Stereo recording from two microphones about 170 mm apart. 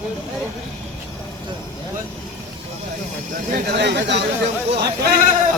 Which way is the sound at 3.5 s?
80° right.